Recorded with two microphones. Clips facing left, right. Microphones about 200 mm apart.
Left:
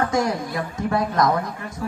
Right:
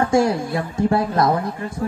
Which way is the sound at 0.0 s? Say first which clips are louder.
Right 5 dB; 30° right (ahead or behind).